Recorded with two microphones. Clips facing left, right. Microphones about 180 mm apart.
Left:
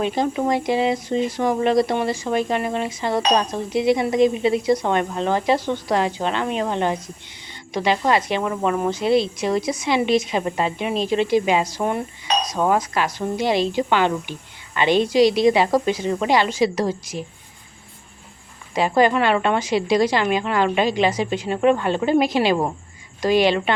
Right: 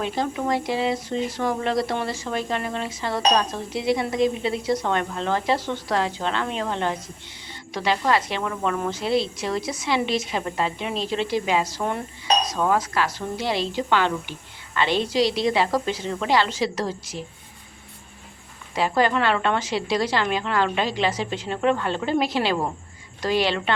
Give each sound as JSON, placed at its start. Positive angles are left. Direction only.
{"t": 0.0, "sound": "speech", "side_deg": 15}
{"t": 18.7, "sound": "speech", "side_deg": 15}